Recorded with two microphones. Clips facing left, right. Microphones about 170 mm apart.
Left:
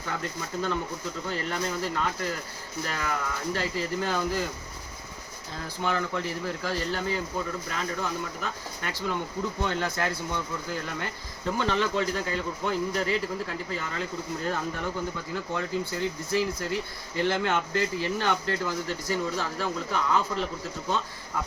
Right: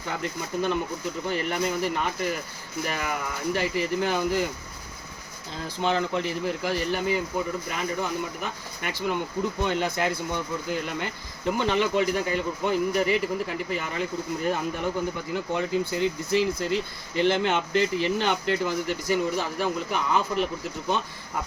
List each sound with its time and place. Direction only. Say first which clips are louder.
0.1 s speech: right 3 dB; 20° right (ahead or behind)
5.6 s speech: right 4 dB; 25° right (ahead or behind)